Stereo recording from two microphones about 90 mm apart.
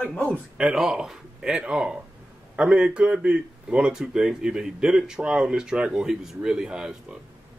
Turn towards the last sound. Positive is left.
turn(degrees=-10)  # may be behind; listen again after turning